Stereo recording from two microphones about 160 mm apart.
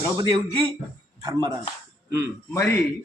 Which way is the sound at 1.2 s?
20° right (ahead or behind).